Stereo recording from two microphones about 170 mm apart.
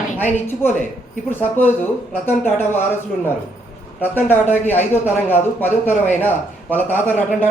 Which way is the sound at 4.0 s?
10° left (ahead or behind).